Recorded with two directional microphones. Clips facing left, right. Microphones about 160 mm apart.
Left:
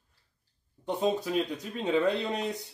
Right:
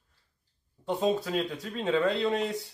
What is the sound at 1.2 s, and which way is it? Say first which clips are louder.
Speech: left 1 dB; 15° left (ahead or behind).